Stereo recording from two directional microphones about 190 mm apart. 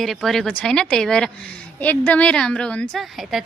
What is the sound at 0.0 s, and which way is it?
A woman's voice, centre (ahead or behind).